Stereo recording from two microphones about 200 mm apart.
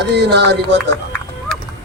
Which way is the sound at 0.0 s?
55° right (ahead or behind).